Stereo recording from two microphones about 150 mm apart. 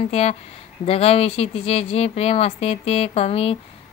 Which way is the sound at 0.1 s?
45° left (ahead or behind).